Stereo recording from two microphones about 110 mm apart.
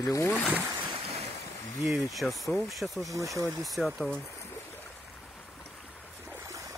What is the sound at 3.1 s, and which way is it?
Speech, 30° right (ahead or behind).